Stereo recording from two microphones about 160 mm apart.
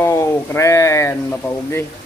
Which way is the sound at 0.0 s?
15° left (ahead or behind).